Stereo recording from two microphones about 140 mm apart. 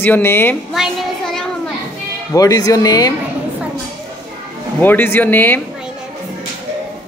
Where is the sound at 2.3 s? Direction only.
25° left (ahead or behind).